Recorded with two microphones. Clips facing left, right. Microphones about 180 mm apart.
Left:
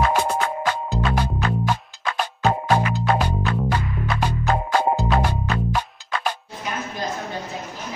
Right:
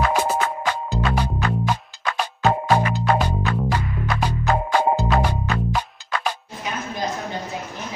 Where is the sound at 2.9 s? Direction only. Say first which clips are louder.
Right 1 dB; centre (ahead or behind).